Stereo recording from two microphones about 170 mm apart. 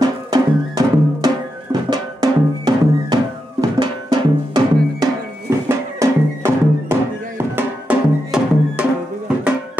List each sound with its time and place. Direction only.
0.0 s music: 20° right (ahead or behind); by 8.8 s 5° right (ahead or behind)